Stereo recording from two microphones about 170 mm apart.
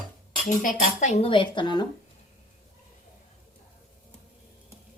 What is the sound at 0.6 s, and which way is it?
Speech, 45° left (ahead or behind).